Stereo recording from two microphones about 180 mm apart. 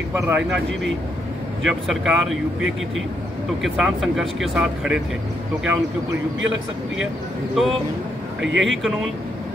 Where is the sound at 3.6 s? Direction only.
Centre (ahead or behind).